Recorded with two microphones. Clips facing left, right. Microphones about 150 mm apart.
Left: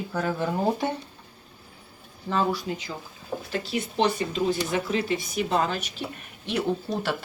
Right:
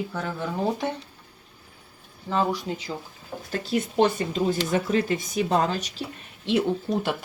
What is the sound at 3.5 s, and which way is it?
Speech, 45° right (ahead or behind).